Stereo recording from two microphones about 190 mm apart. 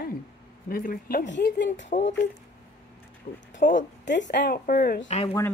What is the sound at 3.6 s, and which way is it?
Speech, 40° left (ahead or behind).